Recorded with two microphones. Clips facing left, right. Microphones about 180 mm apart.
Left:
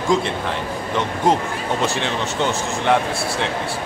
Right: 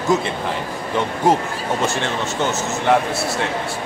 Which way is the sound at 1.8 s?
Centre (ahead or behind).